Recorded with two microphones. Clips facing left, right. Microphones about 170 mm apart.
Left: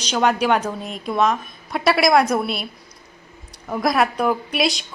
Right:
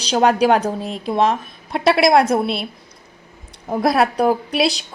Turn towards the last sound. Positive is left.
turn(degrees=-35)  # may be behind; listen again after turning